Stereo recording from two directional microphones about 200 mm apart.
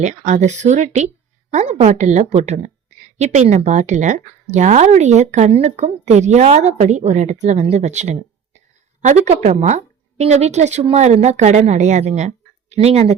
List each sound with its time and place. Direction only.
0.0 s a woman's voice: 40° right (ahead or behind)